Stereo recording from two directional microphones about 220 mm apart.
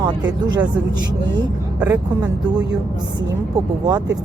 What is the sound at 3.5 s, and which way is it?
Speech, 15° right (ahead or behind).